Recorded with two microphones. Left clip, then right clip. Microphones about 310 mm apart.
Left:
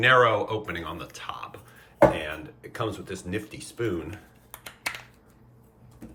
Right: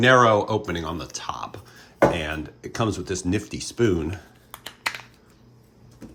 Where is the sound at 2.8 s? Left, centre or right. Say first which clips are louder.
Right 6 dB; centre.